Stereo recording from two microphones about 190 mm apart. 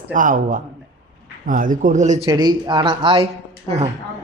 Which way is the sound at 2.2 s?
20° right (ahead or behind).